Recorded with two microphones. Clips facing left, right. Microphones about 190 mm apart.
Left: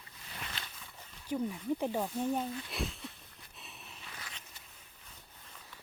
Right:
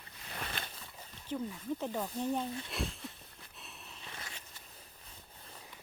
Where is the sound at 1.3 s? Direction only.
15° left (ahead or behind).